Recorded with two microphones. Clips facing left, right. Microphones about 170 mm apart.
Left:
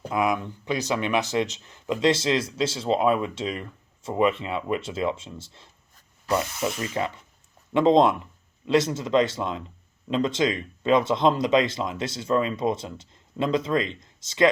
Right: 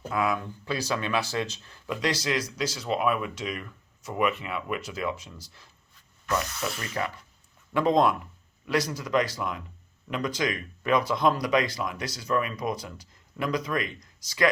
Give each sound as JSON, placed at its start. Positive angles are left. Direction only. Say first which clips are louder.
{"t": 0.1, "sound": "speech", "louder": "left 3 dB", "side_deg": 20}
{"t": 5.9, "sound": "a sound", "louder": "left 4 dB", "side_deg": 30}
{"t": 6.9, "sound": "speech", "louder": "left 3 dB", "side_deg": 25}